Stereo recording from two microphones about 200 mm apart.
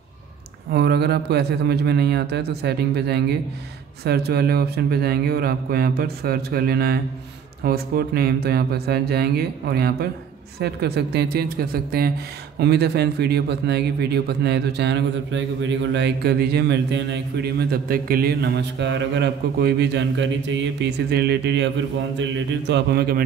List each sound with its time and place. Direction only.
0.7 s a man's voice: 55° right (ahead or behind)